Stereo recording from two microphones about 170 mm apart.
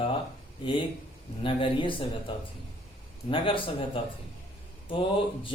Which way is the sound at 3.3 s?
30° left (ahead or behind).